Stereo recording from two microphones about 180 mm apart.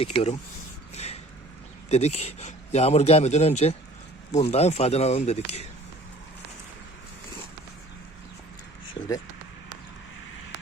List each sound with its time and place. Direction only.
0.0 s a man's voice: 30° left (ahead or behind)
0.9 s a sound: 35° left (ahead or behind)
1.9 s a man's voice: 35° left (ahead or behind)